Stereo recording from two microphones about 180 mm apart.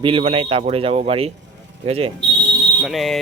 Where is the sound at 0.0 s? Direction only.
30° right (ahead or behind).